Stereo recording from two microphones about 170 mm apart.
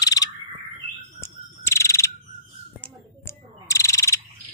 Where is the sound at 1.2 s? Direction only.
15° left (ahead or behind).